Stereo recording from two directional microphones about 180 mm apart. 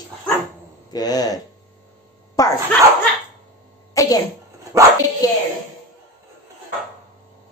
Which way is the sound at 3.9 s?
20° left (ahead or behind).